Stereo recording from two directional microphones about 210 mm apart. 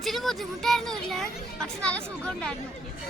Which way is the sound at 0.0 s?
Centre (ahead or behind).